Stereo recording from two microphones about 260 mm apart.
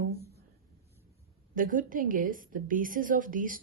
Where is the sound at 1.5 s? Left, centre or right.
Right.